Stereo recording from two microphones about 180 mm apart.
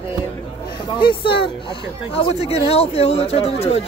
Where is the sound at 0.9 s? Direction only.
30° left (ahead or behind).